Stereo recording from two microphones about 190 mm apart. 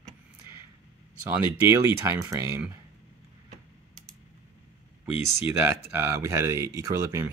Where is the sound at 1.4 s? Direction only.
15° right (ahead or behind).